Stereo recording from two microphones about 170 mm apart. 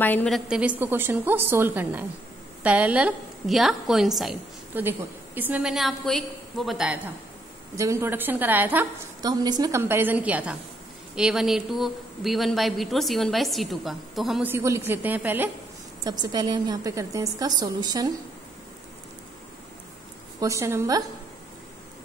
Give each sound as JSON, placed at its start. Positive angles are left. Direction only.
{"t": 0.0, "sound": "a woman's voice", "side_deg": 10}
{"t": 7.7, "sound": "a woman's voice", "side_deg": -15}
{"t": 9.2, "sound": "a woman's voice", "side_deg": -25}
{"t": 14.5, "sound": "a woman's voice", "side_deg": -15}
{"t": 16.0, "sound": "a woman's voice", "side_deg": -25}
{"t": 20.3, "sound": "a woman's voice", "side_deg": -20}